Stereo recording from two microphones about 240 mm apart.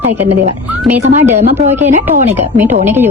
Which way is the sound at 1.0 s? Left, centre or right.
Right.